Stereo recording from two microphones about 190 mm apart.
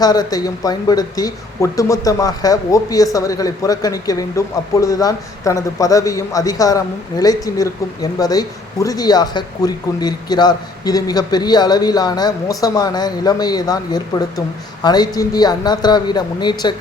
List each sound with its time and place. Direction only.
0.0 s speech: 20° left (ahead or behind)